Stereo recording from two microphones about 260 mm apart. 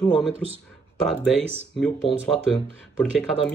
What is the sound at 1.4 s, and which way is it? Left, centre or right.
Speech, right.